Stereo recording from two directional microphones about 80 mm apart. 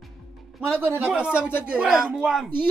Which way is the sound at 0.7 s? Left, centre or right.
Right.